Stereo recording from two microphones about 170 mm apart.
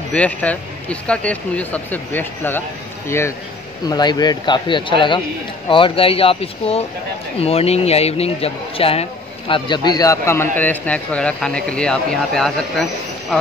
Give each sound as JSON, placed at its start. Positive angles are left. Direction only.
{"t": 0.1, "sound": "speech", "side_deg": 10}